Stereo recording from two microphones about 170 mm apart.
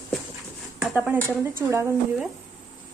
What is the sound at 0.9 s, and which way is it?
Speech, 10° right (ahead or behind).